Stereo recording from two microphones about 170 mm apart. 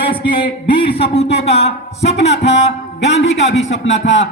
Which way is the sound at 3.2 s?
90° left.